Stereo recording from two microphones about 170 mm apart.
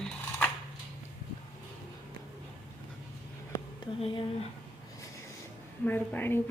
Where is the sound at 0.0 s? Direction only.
10° left (ahead or behind).